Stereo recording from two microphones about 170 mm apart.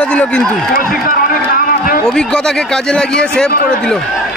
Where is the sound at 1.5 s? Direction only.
55° left (ahead or behind).